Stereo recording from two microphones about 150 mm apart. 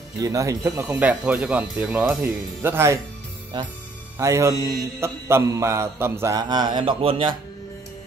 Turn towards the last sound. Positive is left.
turn(degrees=-35)  # may be behind; listen again after turning